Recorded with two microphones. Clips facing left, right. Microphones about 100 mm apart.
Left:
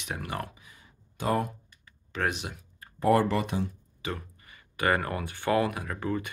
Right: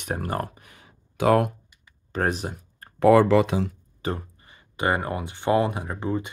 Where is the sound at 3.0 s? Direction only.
90° right.